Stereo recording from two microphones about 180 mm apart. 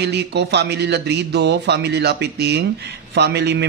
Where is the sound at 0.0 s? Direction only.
65° right (ahead or behind).